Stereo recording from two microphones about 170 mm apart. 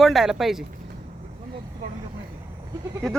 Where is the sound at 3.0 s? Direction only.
Centre (ahead or behind).